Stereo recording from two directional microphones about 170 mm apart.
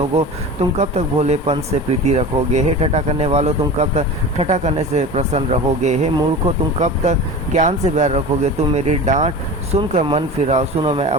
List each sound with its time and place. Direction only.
0.1 s speech: 35° right (ahead or behind)